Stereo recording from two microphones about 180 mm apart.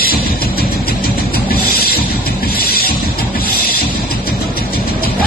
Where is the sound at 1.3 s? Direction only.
60° left (ahead or behind).